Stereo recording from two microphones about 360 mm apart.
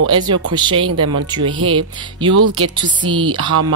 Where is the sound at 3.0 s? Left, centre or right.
Centre.